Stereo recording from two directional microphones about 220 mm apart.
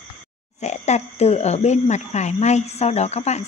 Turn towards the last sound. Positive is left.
turn(degrees=30)  # may be behind; listen again after turning